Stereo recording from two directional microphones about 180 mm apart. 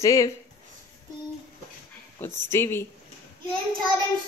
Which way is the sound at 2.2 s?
15° left (ahead or behind).